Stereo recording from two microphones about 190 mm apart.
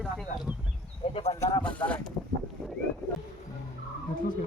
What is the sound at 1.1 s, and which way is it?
Bird, 35° left (ahead or behind).